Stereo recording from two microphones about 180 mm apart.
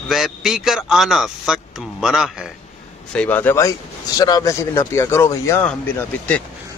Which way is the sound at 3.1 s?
5° left (ahead or behind).